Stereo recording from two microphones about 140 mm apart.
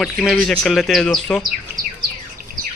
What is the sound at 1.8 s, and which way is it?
Insect, 25° right (ahead or behind).